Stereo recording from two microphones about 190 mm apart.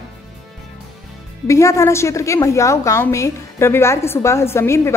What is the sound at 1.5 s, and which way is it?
A woman's voice, 15° left (ahead or behind).